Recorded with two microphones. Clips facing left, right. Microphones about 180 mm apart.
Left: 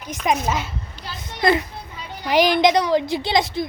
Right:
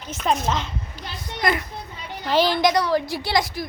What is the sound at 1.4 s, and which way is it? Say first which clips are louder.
A woman's voice: left 5 dB; 25° left (ahead or behind).